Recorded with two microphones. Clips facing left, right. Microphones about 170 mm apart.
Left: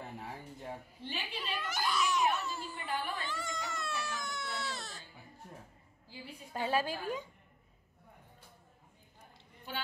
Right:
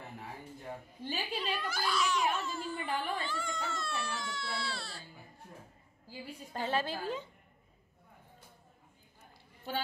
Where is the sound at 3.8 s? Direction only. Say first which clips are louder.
Right 1 dB; 20° left (ahead or behind).